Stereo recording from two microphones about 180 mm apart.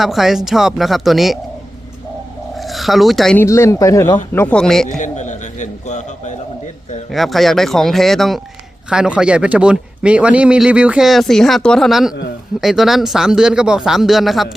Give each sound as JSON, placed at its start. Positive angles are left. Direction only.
{"t": 0.0, "sound": "speech", "side_deg": 0}
{"t": 2.6, "sound": "speech", "side_deg": 0}
{"t": 3.4, "sound": "speech", "side_deg": 15}
{"t": 4.9, "sound": "a man's voice", "side_deg": 45}
{"t": 7.1, "sound": "speech", "side_deg": 0}